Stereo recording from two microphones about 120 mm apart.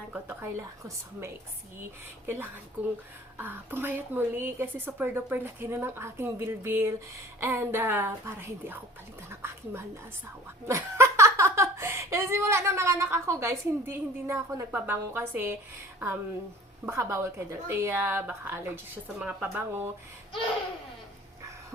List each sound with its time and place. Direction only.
0.1 s speech: 20° right (ahead or behind)
16.8 s speech: 25° right (ahead or behind)